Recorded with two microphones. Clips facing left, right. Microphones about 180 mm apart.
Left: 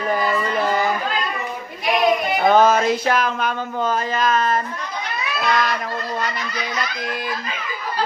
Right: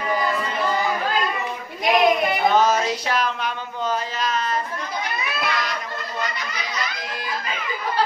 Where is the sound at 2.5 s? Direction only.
55° left (ahead or behind).